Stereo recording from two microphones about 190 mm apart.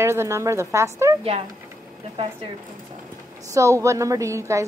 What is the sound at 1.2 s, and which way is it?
A woman's voice, 30° right (ahead or behind).